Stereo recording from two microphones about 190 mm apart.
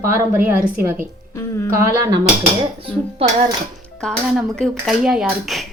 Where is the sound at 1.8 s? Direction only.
15° right (ahead or behind).